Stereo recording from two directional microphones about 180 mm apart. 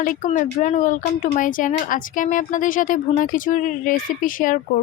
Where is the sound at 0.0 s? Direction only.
50° left (ahead or behind).